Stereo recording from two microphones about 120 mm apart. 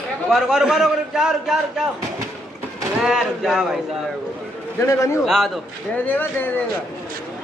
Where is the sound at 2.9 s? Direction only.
5° right (ahead or behind).